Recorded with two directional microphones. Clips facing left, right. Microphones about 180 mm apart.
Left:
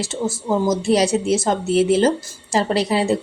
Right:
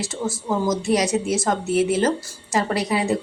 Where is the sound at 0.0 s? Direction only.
25° left (ahead or behind).